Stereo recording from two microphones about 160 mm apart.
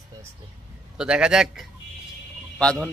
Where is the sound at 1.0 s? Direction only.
5° right (ahead or behind).